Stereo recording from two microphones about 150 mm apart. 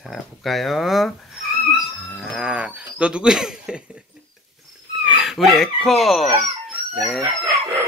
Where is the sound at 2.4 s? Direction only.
10° right (ahead or behind).